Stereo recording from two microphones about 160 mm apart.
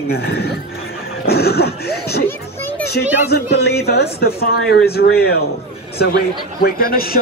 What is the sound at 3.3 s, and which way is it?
A man's voice, 85° left.